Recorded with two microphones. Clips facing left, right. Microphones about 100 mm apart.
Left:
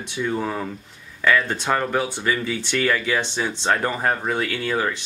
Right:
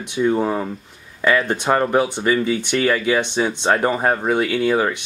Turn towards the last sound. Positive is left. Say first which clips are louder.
# right 6 dB
turn(degrees=-20)  # may be behind; listen again after turning